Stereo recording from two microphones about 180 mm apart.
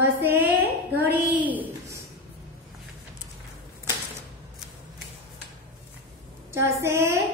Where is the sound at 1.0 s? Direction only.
10° right (ahead or behind).